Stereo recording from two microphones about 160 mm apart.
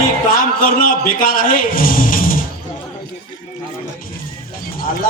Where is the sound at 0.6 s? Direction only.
60° left (ahead or behind).